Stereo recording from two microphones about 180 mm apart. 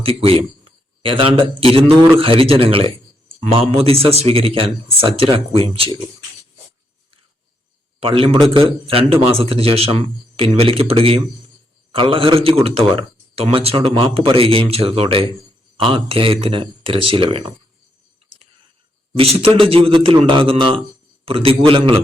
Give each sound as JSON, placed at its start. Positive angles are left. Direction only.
{"t": 0.0, "sound": "speech", "side_deg": -30}
{"t": 7.9, "sound": "speech", "side_deg": -30}
{"t": 19.1, "sound": "speech", "side_deg": -35}